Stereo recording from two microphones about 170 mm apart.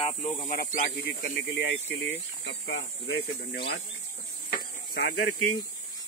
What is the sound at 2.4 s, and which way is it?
Speech, 70° left (ahead or behind).